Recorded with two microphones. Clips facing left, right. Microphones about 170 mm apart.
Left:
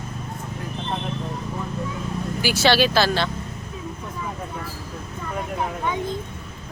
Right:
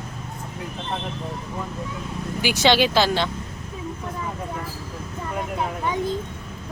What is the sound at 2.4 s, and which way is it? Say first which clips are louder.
Speech: even; 20° right (ahead or behind).